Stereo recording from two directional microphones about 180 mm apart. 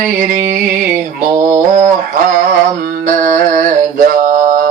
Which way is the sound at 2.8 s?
45° right (ahead or behind).